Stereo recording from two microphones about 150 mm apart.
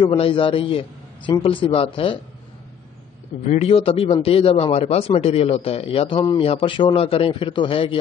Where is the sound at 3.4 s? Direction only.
45° left (ahead or behind).